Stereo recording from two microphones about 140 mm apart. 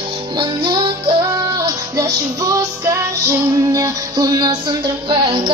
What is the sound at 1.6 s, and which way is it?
Music, 25° right (ahead or behind).